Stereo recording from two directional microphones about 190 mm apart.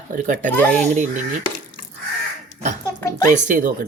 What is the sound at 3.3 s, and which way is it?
Speech, 45° right (ahead or behind).